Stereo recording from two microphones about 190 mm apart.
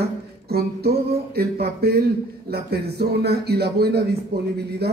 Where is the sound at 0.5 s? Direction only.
55° right (ahead or behind).